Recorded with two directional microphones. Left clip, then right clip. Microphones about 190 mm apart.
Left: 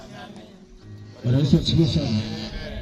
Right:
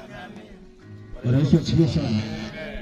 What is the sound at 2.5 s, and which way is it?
Music, centre (ahead or behind).